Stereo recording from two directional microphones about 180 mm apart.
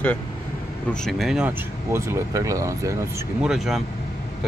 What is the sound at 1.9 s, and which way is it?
Speech, 20° right (ahead or behind).